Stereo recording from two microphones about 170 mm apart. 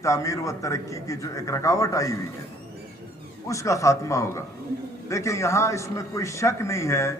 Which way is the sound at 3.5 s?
20° left (ahead or behind).